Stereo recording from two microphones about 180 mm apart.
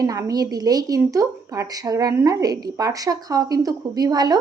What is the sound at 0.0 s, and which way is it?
Speech, 20° right (ahead or behind).